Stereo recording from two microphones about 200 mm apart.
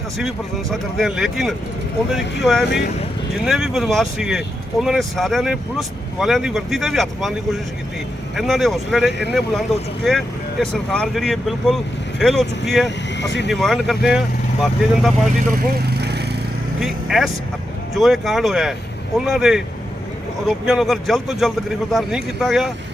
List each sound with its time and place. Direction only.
0.2 s speech: centre (ahead or behind)
15.4 s vehicle: 45° right (ahead or behind)
16.8 s speech: centre (ahead or behind)